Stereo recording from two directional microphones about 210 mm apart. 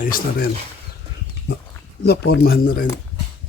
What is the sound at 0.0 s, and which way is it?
Speech, 40° left (ahead or behind).